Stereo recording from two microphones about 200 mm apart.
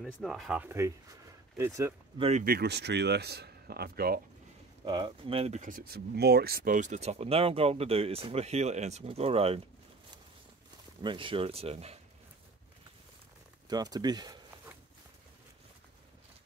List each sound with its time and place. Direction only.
0.0 s speech: centre (ahead or behind)
2.1 s speech: 30° right (ahead or behind)
2.4 s speech: 50° right (ahead or behind)
4.8 s speech: 25° right (ahead or behind)
11.0 s speech: 25° right (ahead or behind)
13.7 s a sound: 20° right (ahead or behind)